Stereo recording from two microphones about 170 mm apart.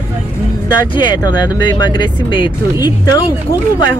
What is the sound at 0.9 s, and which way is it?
Speech, 25° left (ahead or behind).